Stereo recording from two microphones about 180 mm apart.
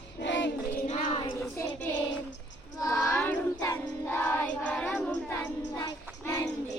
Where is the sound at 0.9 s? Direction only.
40° left (ahead or behind).